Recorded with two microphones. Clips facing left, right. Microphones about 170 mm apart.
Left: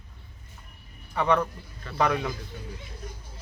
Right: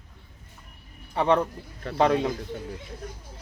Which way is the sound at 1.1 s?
30° right (ahead or behind).